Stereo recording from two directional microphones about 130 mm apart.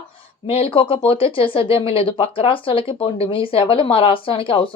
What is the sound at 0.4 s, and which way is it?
Speech, 45° left (ahead or behind).